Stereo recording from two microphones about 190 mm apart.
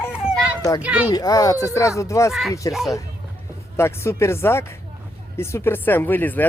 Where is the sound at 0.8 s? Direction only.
5° right (ahead or behind).